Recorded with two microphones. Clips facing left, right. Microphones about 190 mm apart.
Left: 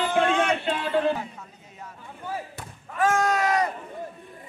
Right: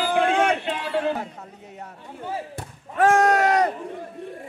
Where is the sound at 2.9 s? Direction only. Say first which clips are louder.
Right 5 dB; 65° right (ahead or behind).